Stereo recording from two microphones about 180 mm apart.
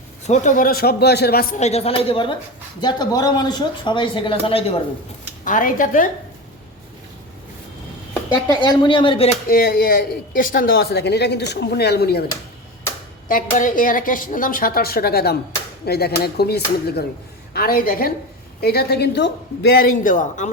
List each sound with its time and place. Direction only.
0.3 s a woman's voice: 45° left (ahead or behind)
1.5 s a woman's voice: 35° left (ahead or behind)
5.5 s a woman's voice: 50° left (ahead or behind)
8.6 s speech: 25° left (ahead or behind)
9.5 s a woman's voice: 55° left (ahead or behind)
13.2 s a woman's voice: 50° left (ahead or behind)